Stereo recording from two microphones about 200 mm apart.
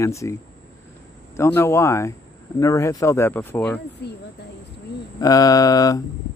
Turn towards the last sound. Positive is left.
turn(degrees=20)  # may be behind; listen again after turning